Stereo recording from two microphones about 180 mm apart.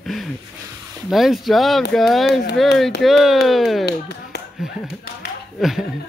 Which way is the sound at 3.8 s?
65° left (ahead or behind).